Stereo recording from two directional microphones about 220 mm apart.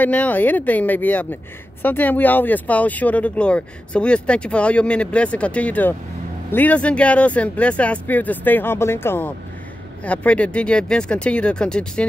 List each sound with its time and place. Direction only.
0.0 s a woman's voice: 5° left (ahead or behind)